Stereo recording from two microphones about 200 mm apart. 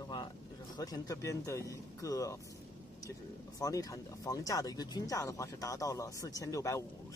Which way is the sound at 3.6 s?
15° left (ahead or behind).